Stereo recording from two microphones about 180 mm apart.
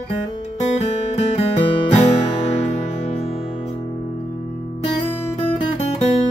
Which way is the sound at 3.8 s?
35° left (ahead or behind).